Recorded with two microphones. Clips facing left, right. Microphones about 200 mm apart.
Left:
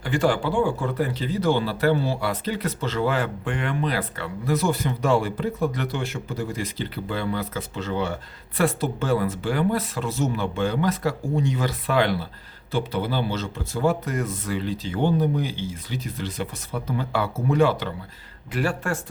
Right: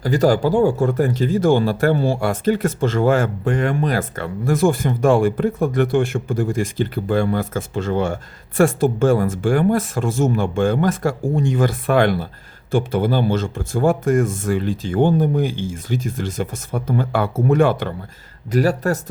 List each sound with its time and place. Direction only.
0.0 s speech: 40° right (ahead or behind)
18.5 s speech: 40° right (ahead or behind)